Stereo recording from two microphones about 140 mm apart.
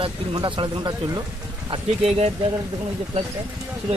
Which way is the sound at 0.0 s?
40° right (ahead or behind).